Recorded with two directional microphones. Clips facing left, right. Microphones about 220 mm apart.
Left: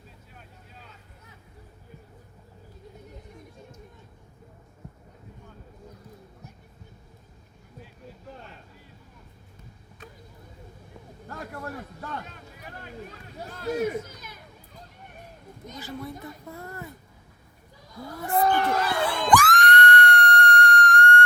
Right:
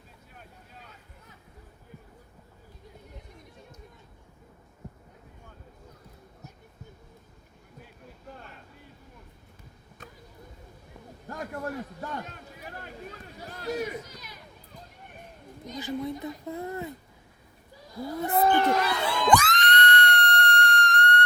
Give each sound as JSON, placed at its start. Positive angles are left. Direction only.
{"t": 15.8, "sound": "speech", "side_deg": -20}
{"t": 18.2, "sound": "crowd", "side_deg": -20}